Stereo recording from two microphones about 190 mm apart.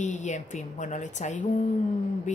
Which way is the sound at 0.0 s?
40° left (ahead or behind).